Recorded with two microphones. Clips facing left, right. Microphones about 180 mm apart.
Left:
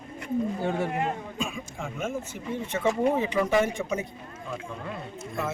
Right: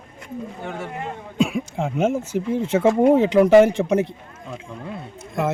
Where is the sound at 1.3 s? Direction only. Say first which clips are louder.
Right 11 dB; 75° right (ahead or behind).